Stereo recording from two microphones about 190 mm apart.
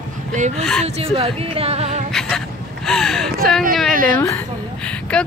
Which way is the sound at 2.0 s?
Centre (ahead or behind).